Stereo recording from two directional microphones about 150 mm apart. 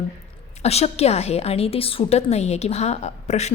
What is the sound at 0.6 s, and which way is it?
Speech, 45° left (ahead or behind).